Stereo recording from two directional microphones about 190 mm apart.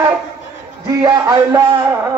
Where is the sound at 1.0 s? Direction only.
20° right (ahead or behind).